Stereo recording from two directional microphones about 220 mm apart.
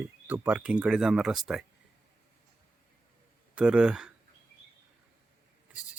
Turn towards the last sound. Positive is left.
turn(degrees=-5)  # may be behind; listen again after turning